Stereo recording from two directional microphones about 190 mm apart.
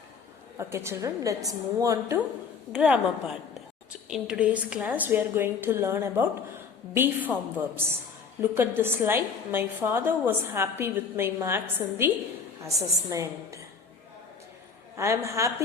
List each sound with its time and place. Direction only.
0.7 s a woman's voice: 15° right (ahead or behind)
2.7 s a woman's voice: 5° right (ahead or behind)
8.4 s a woman's voice: 10° right (ahead or behind)
14.9 s a woman's voice: 15° right (ahead or behind)